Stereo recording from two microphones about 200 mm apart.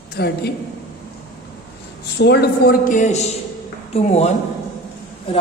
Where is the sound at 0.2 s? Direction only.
50° left (ahead or behind).